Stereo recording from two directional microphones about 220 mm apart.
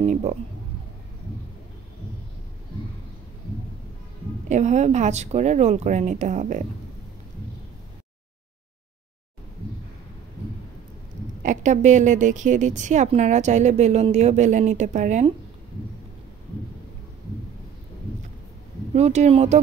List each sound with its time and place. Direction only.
0.0 s speech: 30° right (ahead or behind)
4.5 s a woman's voice: 30° right (ahead or behind)
11.4 s a woman's voice: 35° right (ahead or behind)
18.9 s speech: 30° right (ahead or behind)